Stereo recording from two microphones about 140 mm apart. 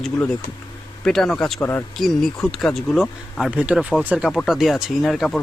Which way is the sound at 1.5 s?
15° left (ahead or behind).